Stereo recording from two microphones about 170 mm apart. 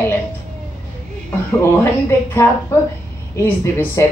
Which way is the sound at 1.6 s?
15° left (ahead or behind).